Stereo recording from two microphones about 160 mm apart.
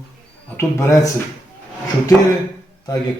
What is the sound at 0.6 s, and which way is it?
Speech, 15° left (ahead or behind).